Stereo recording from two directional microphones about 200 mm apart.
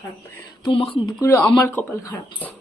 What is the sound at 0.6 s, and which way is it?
Speech, 25° left (ahead or behind).